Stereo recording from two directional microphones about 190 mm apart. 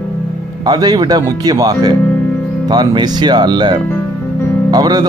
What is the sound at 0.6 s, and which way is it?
Speech, 20° right (ahead or behind).